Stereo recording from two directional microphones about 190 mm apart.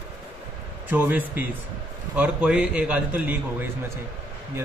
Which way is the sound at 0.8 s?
10° right (ahead or behind).